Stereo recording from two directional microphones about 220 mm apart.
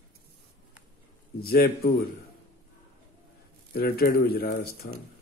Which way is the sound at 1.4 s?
45° left (ahead or behind).